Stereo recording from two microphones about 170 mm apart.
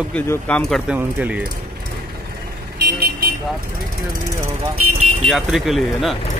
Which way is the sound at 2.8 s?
65° right (ahead or behind).